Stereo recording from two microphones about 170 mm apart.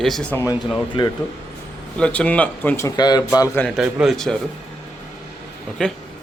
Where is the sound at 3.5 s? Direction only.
Centre (ahead or behind).